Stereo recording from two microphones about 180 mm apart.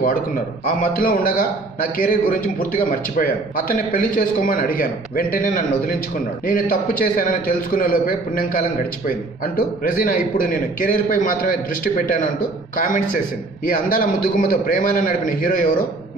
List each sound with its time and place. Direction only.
0.7 s a man's voice: 50° left (ahead or behind)